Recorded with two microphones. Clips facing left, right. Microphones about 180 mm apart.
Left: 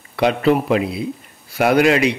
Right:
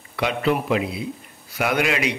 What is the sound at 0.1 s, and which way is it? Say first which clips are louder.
A man's voice: left 6 dB; 35° left (ahead or behind).